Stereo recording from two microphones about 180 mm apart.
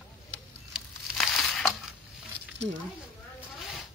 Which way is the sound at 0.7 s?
Centre (ahead or behind).